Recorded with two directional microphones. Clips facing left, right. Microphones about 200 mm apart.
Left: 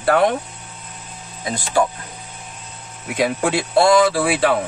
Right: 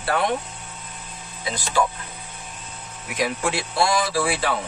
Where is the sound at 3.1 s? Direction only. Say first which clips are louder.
Left 5 dB; 60° left (ahead or behind).